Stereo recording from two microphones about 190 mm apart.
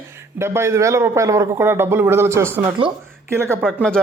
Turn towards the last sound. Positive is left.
turn(degrees=0)  # may be behind; listen again after turning